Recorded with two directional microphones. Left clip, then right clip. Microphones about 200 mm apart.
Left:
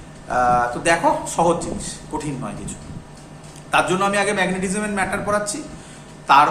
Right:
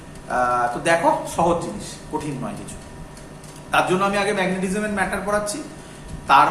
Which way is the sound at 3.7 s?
20° left (ahead or behind).